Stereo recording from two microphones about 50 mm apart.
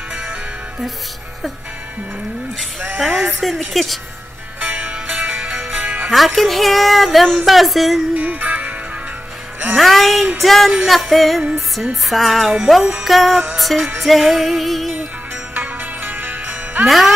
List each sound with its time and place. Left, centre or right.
0.1 s music: right
3.0 s speech: centre
4.6 s music: right
5.2 s music: right
6.0 s speech: centre
8.2 s music: right
9.8 s speech: centre
15.5 s music: right
16.8 s speech: centre